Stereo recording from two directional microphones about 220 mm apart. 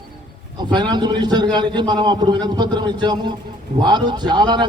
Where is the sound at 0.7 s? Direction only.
20° right (ahead or behind).